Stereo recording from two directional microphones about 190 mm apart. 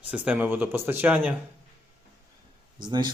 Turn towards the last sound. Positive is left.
turn(degrees=-20)  # may be behind; listen again after turning